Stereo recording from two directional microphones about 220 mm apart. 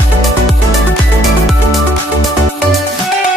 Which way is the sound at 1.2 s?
Centre (ahead or behind).